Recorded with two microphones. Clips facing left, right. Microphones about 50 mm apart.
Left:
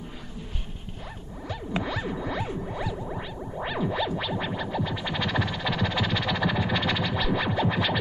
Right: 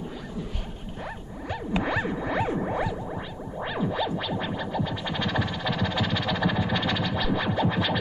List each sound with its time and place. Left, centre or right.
1.5 s music: right
3.1 s music: centre